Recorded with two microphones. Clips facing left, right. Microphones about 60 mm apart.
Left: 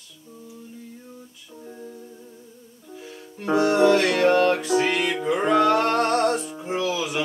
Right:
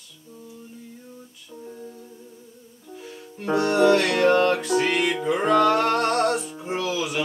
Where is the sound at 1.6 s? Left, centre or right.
Centre.